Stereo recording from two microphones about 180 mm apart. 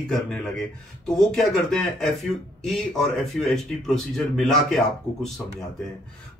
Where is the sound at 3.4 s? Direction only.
Centre (ahead or behind).